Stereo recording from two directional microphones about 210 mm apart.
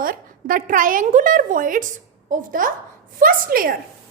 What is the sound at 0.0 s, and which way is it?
A woman's voice, 40° right (ahead or behind).